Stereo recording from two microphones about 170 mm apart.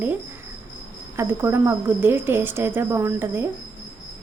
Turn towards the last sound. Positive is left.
turn(degrees=-15)  # may be behind; listen again after turning